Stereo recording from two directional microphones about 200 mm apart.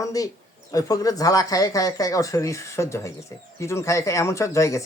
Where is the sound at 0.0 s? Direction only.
15° left (ahead or behind).